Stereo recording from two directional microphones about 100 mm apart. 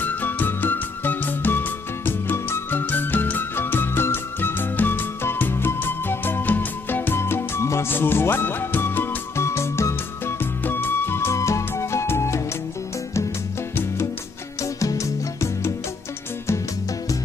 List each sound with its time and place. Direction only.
0.0 s music: 20° left (ahead or behind)
14.6 s music: 30° left (ahead or behind)